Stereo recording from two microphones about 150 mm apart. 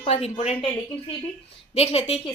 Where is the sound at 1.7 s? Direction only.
45° left (ahead or behind).